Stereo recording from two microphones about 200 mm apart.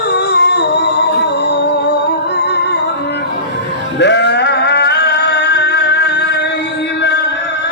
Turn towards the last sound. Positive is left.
turn(degrees=60)  # may be behind; listen again after turning